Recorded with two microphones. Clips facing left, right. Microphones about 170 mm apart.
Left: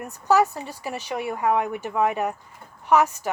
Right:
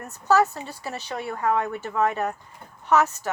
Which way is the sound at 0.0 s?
15° left (ahead or behind).